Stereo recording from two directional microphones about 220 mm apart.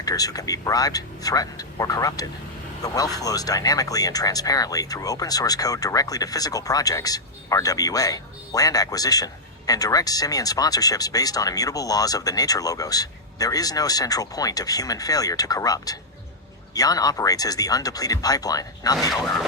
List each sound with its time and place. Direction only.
0.0 s speech: 15° left (ahead or behind)